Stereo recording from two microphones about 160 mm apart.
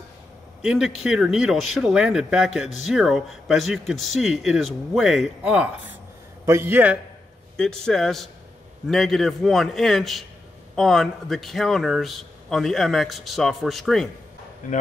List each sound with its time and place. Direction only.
0.6 s a man's voice: 5° right (ahead or behind)
7.5 s speech: 5° left (ahead or behind)
14.6 s speech: 55° left (ahead or behind)